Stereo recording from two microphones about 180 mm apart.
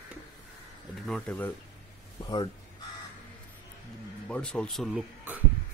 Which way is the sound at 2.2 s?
25° left (ahead or behind).